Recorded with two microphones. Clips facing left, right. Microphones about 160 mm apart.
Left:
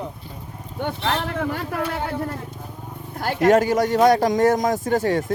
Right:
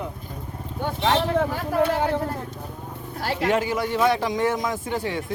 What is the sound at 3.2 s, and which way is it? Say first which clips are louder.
A man's voice: left 6 dB; 50° left (ahead or behind).